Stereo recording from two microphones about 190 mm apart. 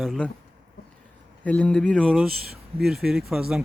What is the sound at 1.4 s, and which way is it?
Speech, 5° left (ahead or behind).